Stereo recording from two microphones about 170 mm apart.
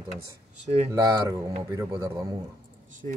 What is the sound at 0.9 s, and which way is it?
Speech, 25° right (ahead or behind).